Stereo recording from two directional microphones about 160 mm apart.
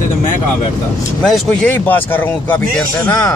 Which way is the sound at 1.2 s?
5° left (ahead or behind).